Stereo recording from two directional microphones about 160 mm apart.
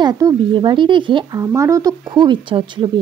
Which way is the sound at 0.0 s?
25° right (ahead or behind).